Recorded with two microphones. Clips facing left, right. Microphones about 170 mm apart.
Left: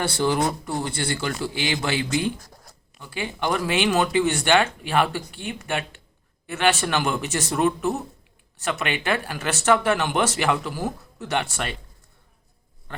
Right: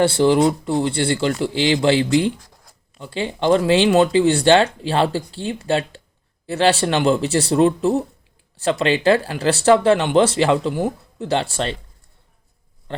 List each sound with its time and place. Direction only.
0.0 s speech: 25° right (ahead or behind)